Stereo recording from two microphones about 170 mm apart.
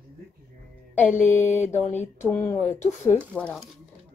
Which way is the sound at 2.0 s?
10° left (ahead or behind).